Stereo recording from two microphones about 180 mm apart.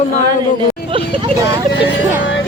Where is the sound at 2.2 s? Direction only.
90° left.